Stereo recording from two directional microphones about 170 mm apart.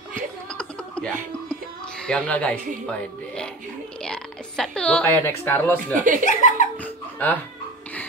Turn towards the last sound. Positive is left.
turn(degrees=10)  # may be behind; listen again after turning